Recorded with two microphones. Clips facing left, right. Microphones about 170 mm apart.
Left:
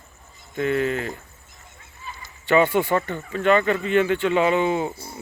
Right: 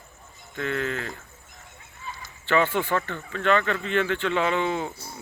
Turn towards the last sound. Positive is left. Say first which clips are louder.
# left 5 dB
turn(degrees=10)  # may be behind; listen again after turning